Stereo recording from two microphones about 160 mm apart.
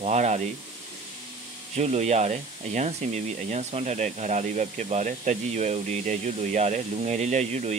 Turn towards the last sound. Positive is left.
turn(degrees=-45)  # may be behind; listen again after turning